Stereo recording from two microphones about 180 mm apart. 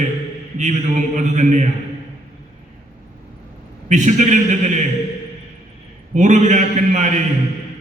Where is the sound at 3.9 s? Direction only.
45° right (ahead or behind).